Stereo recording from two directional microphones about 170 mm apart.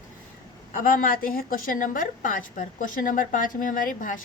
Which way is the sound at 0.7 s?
50° left (ahead or behind).